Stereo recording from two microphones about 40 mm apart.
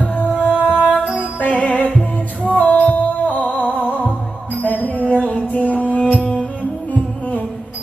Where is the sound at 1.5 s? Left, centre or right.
Left.